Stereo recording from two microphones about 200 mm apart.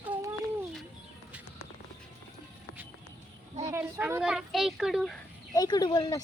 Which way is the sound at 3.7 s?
10° right (ahead or behind).